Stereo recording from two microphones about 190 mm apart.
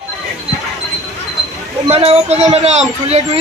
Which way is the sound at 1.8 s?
35° right (ahead or behind).